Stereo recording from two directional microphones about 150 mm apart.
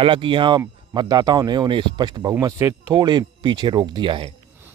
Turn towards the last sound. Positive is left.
turn(degrees=-35)  # may be behind; listen again after turning